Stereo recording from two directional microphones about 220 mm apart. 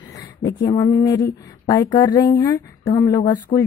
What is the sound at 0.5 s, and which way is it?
Speech, 20° left (ahead or behind).